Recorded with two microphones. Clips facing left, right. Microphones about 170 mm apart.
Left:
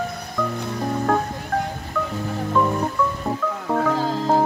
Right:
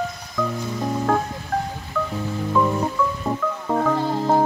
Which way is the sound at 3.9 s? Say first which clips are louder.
Even; 90° left.